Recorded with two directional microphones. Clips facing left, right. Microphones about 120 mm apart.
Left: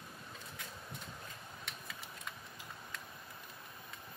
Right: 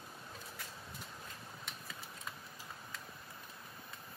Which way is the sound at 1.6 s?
Centre (ahead or behind).